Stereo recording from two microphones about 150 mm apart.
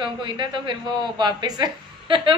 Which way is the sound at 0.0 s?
35° right (ahead or behind).